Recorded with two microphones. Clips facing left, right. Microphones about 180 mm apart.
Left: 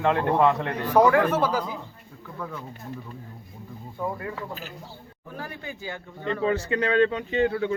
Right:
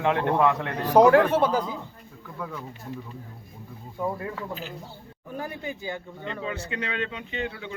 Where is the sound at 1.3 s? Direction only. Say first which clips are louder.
Right 2 dB; 25° right (ahead or behind).